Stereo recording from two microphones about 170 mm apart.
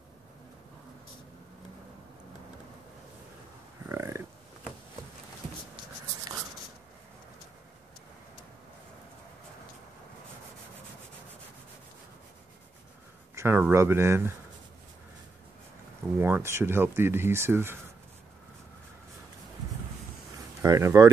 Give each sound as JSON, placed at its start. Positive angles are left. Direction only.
{"t": 3.9, "sound": "a sound", "side_deg": -15}
{"t": 13.3, "sound": "speech", "side_deg": -15}
{"t": 16.2, "sound": "speech", "side_deg": -10}
{"t": 20.6, "sound": "speech", "side_deg": -20}